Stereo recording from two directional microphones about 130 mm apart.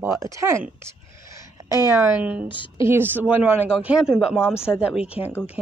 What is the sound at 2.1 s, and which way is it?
Speech, 10° right (ahead or behind).